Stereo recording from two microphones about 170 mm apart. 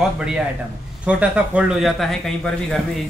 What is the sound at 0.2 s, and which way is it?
Speech, 5° right (ahead or behind).